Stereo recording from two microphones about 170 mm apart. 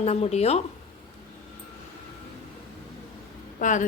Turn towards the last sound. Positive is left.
turn(degrees=50)  # may be behind; listen again after turning